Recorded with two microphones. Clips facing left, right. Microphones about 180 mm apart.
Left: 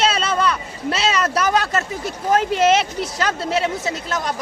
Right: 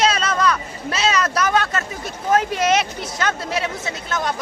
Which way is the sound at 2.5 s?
30° left (ahead or behind).